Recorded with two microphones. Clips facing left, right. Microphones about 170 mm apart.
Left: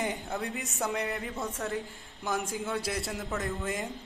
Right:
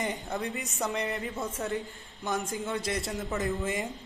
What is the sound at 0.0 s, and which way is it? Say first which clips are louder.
A man's voice: right 1 dB; centre (ahead or behind).